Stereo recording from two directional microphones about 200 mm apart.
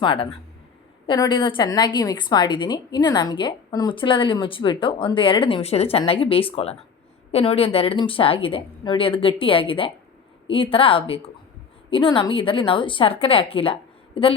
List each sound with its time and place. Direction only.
0.0 s a woman's voice: 25° left (ahead or behind)